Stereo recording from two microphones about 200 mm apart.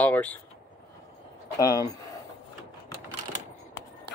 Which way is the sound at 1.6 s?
15° left (ahead or behind).